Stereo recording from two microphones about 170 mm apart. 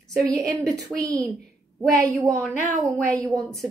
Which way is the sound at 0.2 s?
20° right (ahead or behind).